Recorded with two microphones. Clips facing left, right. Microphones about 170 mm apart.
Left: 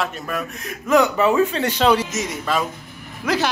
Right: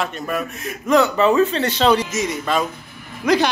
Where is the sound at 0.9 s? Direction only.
10° left (ahead or behind).